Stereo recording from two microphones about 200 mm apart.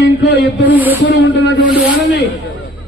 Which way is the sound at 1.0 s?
65° left (ahead or behind).